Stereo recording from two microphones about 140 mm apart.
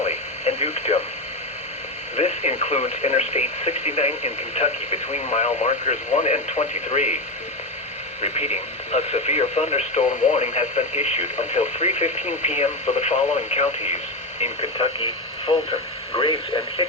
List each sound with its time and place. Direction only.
0.0 s radio: 50° left (ahead or behind)
2.1 s speech: 50° left (ahead or behind)
8.2 s speech: 50° left (ahead or behind)